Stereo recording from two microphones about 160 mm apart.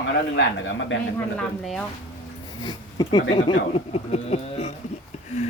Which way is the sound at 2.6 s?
25° left (ahead or behind).